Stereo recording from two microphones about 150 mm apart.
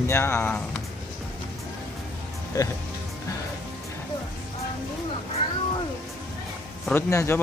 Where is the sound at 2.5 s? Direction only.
25° left (ahead or behind).